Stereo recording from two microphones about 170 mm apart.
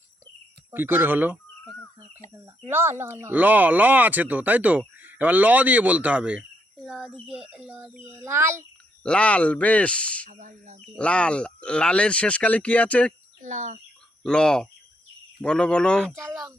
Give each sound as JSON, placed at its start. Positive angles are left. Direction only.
{"t": 0.7, "sound": "speech", "side_deg": -10}
{"t": 9.0, "sound": "speech", "side_deg": 5}
{"t": 10.2, "sound": "speech", "side_deg": -45}
{"t": 10.9, "sound": "speech", "side_deg": 5}
{"t": 13.4, "sound": "speech", "side_deg": -45}
{"t": 14.3, "sound": "speech", "side_deg": 5}